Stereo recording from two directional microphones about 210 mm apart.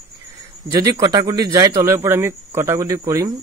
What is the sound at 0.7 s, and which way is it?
Speech, 15° right (ahead or behind).